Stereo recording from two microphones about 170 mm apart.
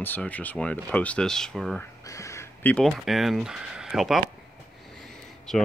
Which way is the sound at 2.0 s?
20° left (ahead or behind).